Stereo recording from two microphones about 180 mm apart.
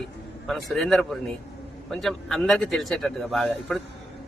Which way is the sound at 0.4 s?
Centre (ahead or behind).